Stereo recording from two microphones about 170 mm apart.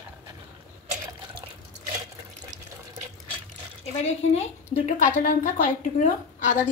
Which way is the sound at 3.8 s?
40° left (ahead or behind).